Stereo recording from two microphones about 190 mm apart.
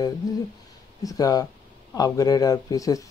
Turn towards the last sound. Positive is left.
turn(degrees=20)  # may be behind; listen again after turning